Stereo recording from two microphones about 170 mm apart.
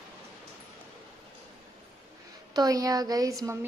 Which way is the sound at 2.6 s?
20° right (ahead or behind).